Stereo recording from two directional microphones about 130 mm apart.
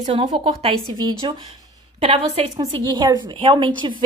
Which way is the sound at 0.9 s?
35° right (ahead or behind).